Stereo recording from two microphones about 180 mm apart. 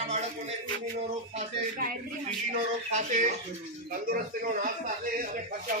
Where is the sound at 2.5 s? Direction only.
45° right (ahead or behind).